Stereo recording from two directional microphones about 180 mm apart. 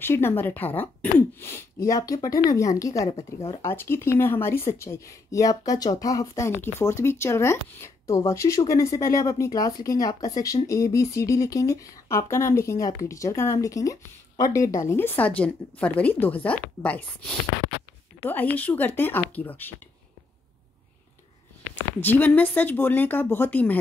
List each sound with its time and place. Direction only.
0.0 s speech: 10° left (ahead or behind)
21.7 s speech: 10° left (ahead or behind)